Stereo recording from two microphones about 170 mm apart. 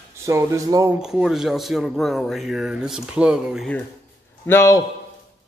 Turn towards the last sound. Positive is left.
turn(degrees=15)  # may be behind; listen again after turning